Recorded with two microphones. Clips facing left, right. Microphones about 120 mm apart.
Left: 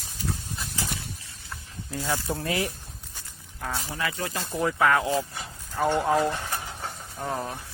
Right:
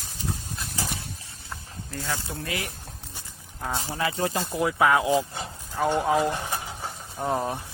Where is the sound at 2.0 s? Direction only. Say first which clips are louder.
Left 3 dB; 15° left (ahead or behind).